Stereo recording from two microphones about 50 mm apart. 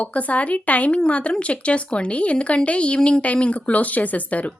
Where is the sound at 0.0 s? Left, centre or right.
Left.